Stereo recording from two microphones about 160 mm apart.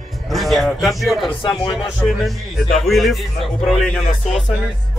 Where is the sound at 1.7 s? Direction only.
Centre (ahead or behind).